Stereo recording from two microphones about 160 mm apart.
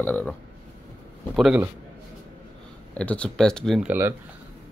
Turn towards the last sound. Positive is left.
turn(degrees=0)  # may be behind; listen again after turning